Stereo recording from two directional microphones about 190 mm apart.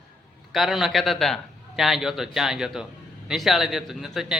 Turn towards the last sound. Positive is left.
turn(degrees=0)  # may be behind; listen again after turning